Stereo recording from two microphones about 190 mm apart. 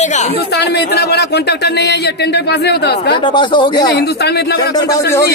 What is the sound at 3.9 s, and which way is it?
Speech, 60° left (ahead or behind).